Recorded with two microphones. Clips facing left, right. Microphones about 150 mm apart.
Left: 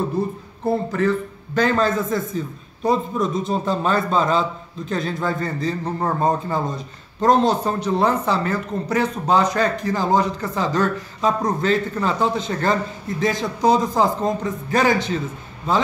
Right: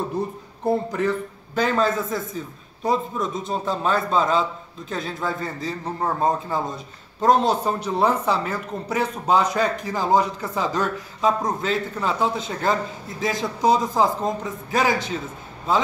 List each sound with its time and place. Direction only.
0.7 s a man's voice: 15° right (ahead or behind)